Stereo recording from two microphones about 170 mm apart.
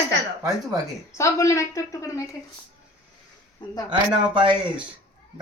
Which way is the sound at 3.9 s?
30° right (ahead or behind).